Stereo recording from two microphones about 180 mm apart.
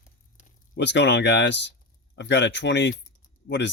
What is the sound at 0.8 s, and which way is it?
Speech, 75° left (ahead or behind).